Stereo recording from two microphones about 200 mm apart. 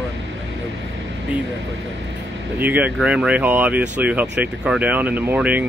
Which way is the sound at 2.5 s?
10° right (ahead or behind).